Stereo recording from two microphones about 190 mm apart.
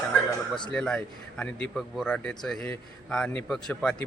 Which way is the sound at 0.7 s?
5° left (ahead or behind).